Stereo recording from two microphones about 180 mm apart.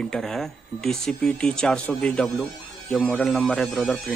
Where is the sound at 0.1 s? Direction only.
Centre (ahead or behind).